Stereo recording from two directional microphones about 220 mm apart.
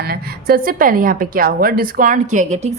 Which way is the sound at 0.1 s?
40° right (ahead or behind).